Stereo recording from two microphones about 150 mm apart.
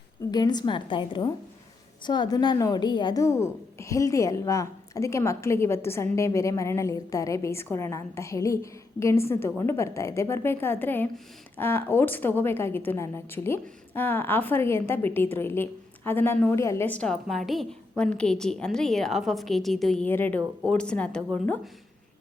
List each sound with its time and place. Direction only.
0.3 s a woman's voice: 30° left (ahead or behind); by 20.1 s centre (ahead or behind)
20.1 s a woman's voice: 15° left (ahead or behind)